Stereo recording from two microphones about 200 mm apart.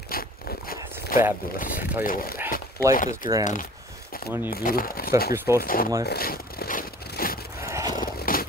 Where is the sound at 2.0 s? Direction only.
45° left (ahead or behind).